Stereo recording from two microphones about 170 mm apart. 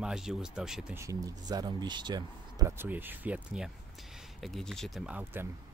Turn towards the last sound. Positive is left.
turn(degrees=-10)  # may be behind; listen again after turning